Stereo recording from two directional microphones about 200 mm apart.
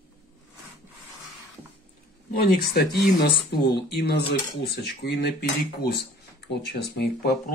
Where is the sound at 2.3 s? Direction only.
50° left (ahead or behind).